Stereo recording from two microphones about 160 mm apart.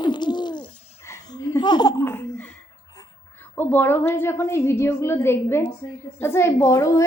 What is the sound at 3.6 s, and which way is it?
A woman's voice, 10° left (ahead or behind).